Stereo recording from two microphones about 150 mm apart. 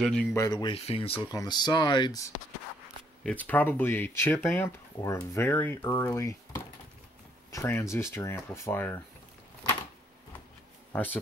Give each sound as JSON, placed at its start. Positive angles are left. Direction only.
{"t": 0.0, "sound": "speech", "side_deg": 5}
{"t": 0.3, "sound": "speech", "side_deg": 25}
{"t": 0.7, "sound": "speech", "side_deg": 40}
{"t": 1.3, "sound": "speech", "side_deg": 25}
{"t": 3.3, "sound": "speech", "side_deg": 10}
{"t": 10.9, "sound": "speech", "side_deg": 10}